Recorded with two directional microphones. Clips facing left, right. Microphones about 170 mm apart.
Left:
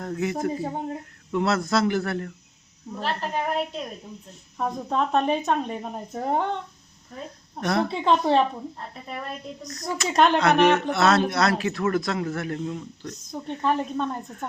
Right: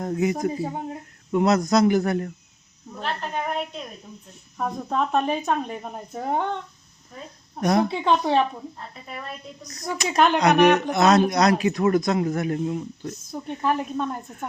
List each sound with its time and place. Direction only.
0.0 s speech: 20° right (ahead or behind)
3.0 s speech: centre (ahead or behind)
7.6 s speech: 15° right (ahead or behind)
7.9 s speech: centre (ahead or behind)
10.1 s speech: centre (ahead or behind)
10.4 s speech: 15° right (ahead or behind)
13.3 s speech: 5° right (ahead or behind)